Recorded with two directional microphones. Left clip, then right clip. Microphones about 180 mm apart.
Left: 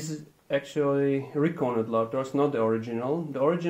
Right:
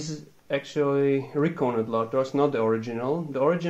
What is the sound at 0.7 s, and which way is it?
Speech, 35° right (ahead or behind).